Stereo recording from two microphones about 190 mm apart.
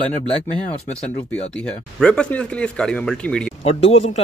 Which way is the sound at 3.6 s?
30° left (ahead or behind).